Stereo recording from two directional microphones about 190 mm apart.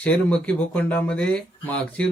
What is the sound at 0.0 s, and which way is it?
Speech, 5° left (ahead or behind).